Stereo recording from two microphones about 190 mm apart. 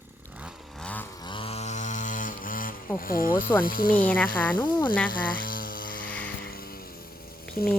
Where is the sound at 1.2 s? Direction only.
25° left (ahead or behind); by 2.7 s 45° left (ahead or behind).